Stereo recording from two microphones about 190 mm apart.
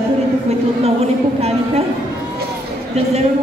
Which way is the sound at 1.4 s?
35° right (ahead or behind).